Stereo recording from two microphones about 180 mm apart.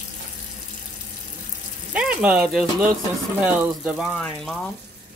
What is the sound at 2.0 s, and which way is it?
Speech, 5° right (ahead or behind).